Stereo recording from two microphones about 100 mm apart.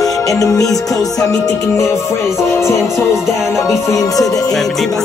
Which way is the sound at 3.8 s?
30° left (ahead or behind).